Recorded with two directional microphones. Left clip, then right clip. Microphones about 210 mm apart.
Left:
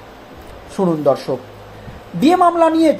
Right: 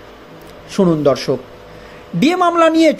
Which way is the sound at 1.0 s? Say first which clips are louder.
Right 1 dB; 45° right (ahead or behind).